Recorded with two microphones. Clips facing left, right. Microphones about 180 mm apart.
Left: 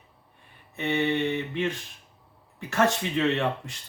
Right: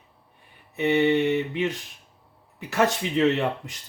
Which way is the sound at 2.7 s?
10° right (ahead or behind).